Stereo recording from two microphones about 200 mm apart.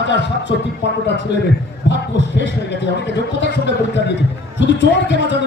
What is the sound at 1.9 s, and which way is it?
A man's voice, 60° left (ahead or behind).